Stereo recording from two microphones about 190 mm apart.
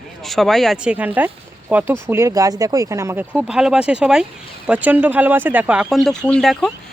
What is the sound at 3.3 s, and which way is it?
Speech, 5° right (ahead or behind).